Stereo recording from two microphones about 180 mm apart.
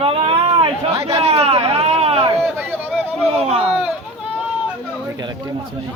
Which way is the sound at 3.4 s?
35° right (ahead or behind).